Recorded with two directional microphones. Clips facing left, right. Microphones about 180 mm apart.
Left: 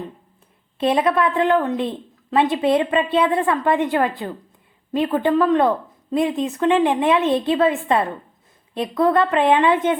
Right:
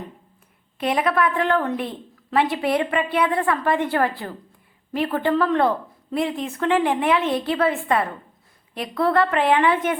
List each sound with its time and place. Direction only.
0.8 s a woman's voice: 25° left (ahead or behind)